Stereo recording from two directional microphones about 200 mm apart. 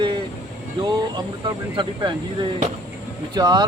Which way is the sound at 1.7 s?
25° right (ahead or behind).